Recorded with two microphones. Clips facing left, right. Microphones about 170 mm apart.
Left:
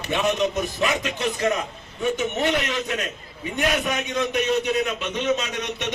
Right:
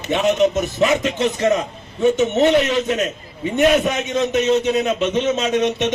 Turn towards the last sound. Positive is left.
turn(degrees=-20)  # may be behind; listen again after turning